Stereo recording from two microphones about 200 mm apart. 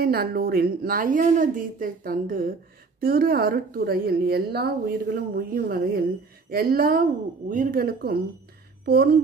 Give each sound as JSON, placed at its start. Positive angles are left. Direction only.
{"t": 0.0, "sound": "a woman's voice", "side_deg": -50}